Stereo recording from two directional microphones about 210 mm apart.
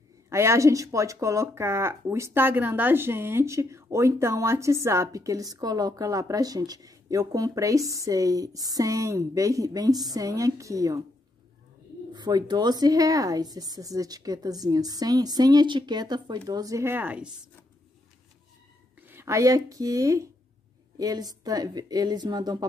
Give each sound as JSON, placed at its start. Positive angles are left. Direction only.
{"t": 0.3, "sound": "speech", "side_deg": -15}
{"t": 12.1, "sound": "speech", "side_deg": -20}
{"t": 19.0, "sound": "a woman's voice", "side_deg": -10}